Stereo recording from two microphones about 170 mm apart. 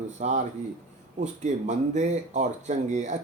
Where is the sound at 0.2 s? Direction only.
45° right (ahead or behind).